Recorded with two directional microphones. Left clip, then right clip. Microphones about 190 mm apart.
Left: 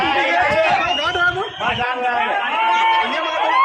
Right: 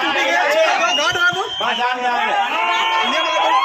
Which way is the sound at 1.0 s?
35° right (ahead or behind).